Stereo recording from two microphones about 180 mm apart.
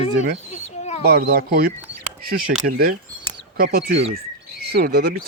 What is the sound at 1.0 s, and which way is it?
Speech, 55° right (ahead or behind).